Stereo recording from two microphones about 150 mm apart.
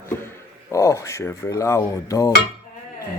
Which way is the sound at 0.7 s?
20° left (ahead or behind).